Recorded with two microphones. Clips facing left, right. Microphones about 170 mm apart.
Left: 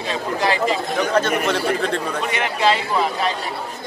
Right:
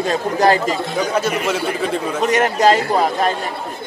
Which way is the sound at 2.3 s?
45° right (ahead or behind).